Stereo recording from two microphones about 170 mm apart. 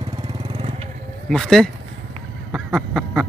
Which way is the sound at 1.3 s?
5° left (ahead or behind).